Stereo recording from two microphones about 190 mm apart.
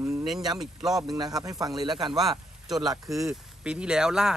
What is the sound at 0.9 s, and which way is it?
A man's voice, 20° right (ahead or behind).